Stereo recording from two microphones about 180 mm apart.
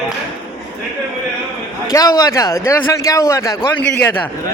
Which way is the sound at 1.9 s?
20° left (ahead or behind).